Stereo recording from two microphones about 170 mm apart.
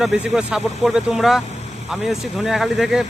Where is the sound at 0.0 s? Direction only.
Centre (ahead or behind).